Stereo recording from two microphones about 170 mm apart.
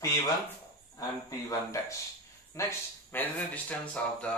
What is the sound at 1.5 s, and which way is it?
Speech, 20° left (ahead or behind).